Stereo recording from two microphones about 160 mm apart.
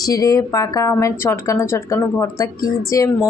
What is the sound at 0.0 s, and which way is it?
A woman's voice, 20° left (ahead or behind).